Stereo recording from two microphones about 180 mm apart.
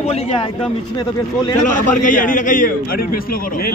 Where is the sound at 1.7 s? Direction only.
45° left (ahead or behind).